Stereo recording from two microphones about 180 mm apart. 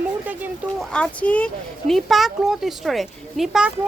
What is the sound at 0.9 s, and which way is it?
Speech, 5° left (ahead or behind).